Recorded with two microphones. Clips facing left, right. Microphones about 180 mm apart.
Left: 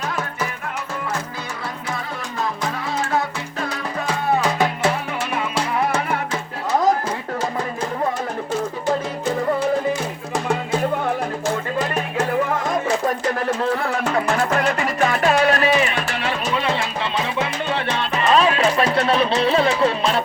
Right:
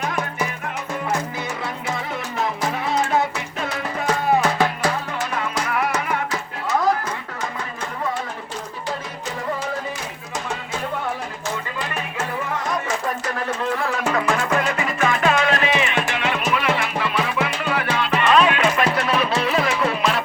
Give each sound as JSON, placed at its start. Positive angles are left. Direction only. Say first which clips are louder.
{"t": 4.8, "sound": "music", "louder": "left 2 dB", "side_deg": 25}
{"t": 10.3, "sound": "music", "louder": "left 7 dB", "side_deg": 60}
{"t": 14.3, "sound": "music", "louder": "left 2 dB", "side_deg": 40}